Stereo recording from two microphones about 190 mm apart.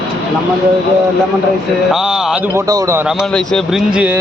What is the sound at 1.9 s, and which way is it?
A man's voice, 5° right (ahead or behind).